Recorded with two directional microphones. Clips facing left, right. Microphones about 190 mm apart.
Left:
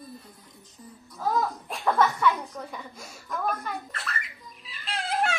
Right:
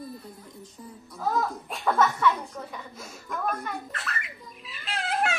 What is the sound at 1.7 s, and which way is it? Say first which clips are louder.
Chuckle: even; centre (ahead or behind).